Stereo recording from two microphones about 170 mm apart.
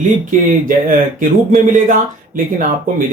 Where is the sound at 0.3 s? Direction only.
50° right (ahead or behind).